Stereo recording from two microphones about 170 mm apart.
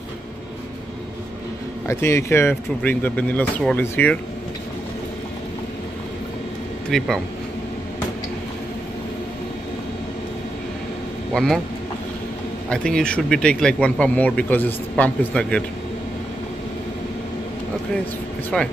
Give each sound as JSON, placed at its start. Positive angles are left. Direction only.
{"t": 1.9, "sound": "speech", "side_deg": 15}
{"t": 6.9, "sound": "speech", "side_deg": 0}
{"t": 11.3, "sound": "speech", "side_deg": 5}
{"t": 12.6, "sound": "speech", "side_deg": 5}